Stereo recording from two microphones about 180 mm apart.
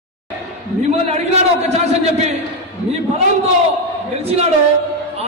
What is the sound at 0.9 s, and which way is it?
Speech, 35° right (ahead or behind).